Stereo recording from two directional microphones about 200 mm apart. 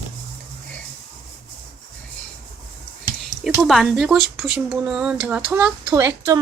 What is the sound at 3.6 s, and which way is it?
Speech, centre (ahead or behind).